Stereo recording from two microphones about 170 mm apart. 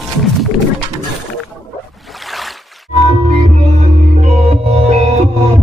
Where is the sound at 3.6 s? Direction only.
40° right (ahead or behind).